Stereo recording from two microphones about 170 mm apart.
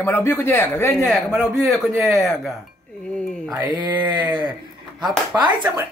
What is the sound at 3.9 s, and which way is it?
Speech, 10° right (ahead or behind).